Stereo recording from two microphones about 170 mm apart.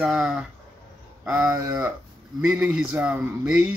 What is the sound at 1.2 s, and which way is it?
Speech, 15° right (ahead or behind).